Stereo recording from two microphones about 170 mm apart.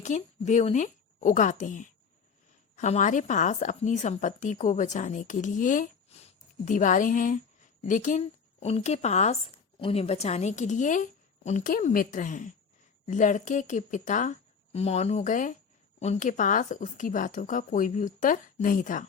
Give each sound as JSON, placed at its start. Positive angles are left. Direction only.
{"t": 0.0, "sound": "a woman's voice", "side_deg": 45}